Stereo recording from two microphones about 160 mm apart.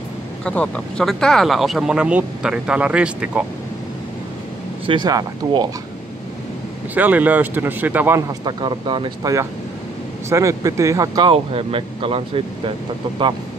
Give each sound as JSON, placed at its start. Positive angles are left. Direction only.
{"t": 0.5, "sound": "speech", "side_deg": 5}
{"t": 4.8, "sound": "speech", "side_deg": -25}
{"t": 7.0, "sound": "speech", "side_deg": -10}
{"t": 8.3, "sound": "speech", "side_deg": -30}
{"t": 11.2, "sound": "speech", "side_deg": -35}